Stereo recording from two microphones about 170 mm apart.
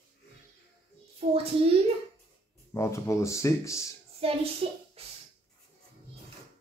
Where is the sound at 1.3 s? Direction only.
35° right (ahead or behind).